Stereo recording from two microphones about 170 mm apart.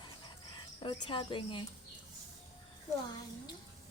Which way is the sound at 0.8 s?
30° left (ahead or behind).